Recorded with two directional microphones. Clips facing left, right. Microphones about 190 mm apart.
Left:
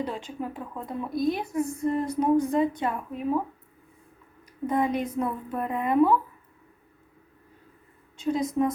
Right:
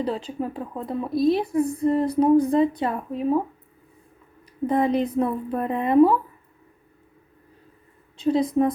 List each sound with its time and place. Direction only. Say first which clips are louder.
0.0 s a woman's voice: right 5 dB; 35° right (ahead or behind)
4.6 s a woman's voice: right 5 dB; 30° right (ahead or behind)
8.1 s a woman's voice: right 5 dB; 30° right (ahead or behind)